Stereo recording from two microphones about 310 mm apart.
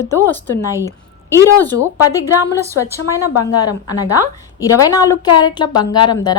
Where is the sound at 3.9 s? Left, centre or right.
Left.